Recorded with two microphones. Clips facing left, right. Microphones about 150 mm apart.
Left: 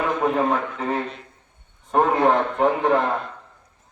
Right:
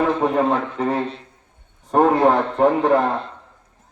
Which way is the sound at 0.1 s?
30° right (ahead or behind).